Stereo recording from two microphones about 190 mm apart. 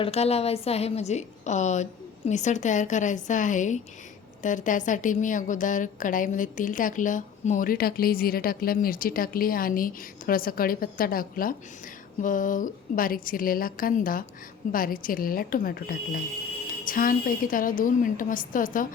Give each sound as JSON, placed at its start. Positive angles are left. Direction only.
{"t": 0.0, "sound": "a woman's voice", "side_deg": 35}